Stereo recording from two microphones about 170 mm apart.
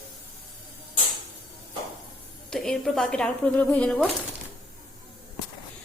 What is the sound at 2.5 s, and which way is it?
A woman's voice, 5° left (ahead or behind).